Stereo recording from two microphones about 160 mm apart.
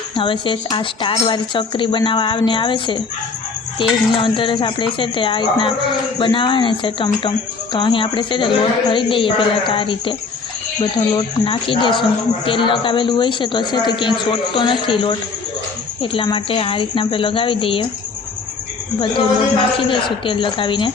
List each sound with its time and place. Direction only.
0.2 s speech: 30° left (ahead or behind)
18.9 s speech: 30° left (ahead or behind)